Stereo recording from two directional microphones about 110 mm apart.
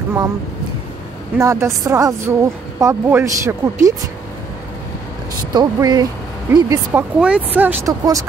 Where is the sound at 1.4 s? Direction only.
30° right (ahead or behind).